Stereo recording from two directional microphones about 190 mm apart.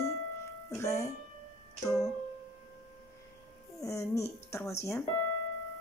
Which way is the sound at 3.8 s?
15° left (ahead or behind).